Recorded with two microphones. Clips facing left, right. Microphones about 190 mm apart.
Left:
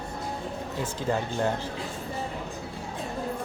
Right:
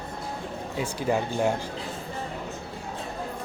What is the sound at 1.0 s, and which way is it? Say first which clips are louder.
Speech: right 2 dB; 15° right (ahead or behind).